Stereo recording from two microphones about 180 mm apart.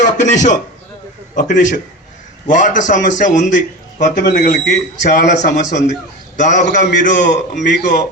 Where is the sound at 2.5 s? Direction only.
45° left (ahead or behind).